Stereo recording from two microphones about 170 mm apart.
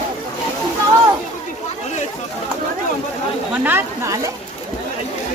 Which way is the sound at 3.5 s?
10° right (ahead or behind).